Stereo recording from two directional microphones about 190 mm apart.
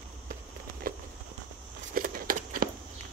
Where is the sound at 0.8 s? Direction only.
50° right (ahead or behind).